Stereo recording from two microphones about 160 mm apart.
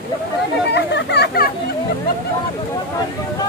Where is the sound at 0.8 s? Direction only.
90° left.